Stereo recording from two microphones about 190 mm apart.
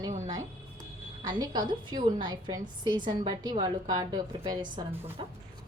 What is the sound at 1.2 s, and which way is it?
A woman's voice, 20° right (ahead or behind).